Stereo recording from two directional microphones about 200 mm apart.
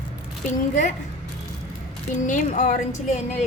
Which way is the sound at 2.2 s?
40° left (ahead or behind).